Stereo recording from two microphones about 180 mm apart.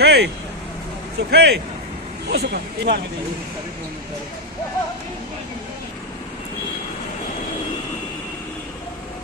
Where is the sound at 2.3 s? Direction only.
65° right (ahead or behind).